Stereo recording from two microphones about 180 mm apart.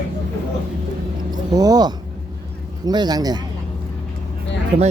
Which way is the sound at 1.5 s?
20° right (ahead or behind).